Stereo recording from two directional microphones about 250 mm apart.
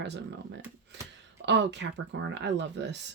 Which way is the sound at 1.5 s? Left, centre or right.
Right.